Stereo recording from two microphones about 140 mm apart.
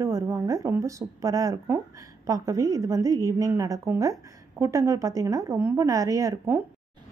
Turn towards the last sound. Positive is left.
turn(degrees=-20)  # may be behind; listen again after turning